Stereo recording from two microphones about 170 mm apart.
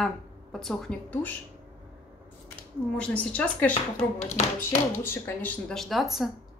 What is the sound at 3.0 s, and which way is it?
A woman's voice, 10° left (ahead or behind).